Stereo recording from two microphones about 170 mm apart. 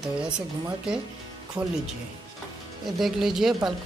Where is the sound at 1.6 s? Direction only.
5° right (ahead or behind).